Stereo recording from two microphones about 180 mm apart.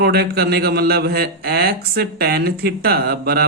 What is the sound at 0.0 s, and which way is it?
Speech, 65° right (ahead or behind).